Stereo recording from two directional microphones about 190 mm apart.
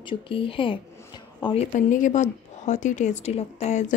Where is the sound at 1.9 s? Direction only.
40° left (ahead or behind).